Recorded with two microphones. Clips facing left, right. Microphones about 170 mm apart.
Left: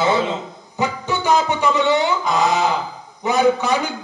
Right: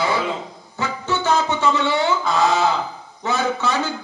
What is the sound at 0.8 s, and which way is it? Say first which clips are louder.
Music: left 2 dB; 15° left (ahead or behind).